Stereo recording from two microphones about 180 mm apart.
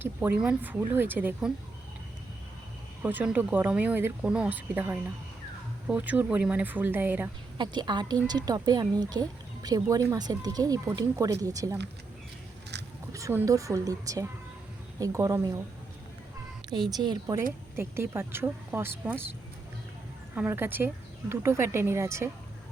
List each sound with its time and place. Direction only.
0.0 s speech: 10° right (ahead or behind)
3.0 s speech: 10° right (ahead or behind)
7.6 s speech: 25° right (ahead or behind)
12.7 s zipper: 70° right (ahead or behind)
13.1 s speech: 15° right (ahead or behind)
16.6 s speech: 25° right (ahead or behind)
20.3 s speech: 10° right (ahead or behind)